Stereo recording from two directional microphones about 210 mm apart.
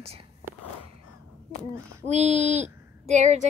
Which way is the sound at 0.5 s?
10° right (ahead or behind).